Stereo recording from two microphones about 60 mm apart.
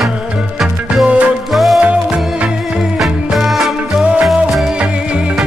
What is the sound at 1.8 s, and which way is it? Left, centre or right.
Music, right.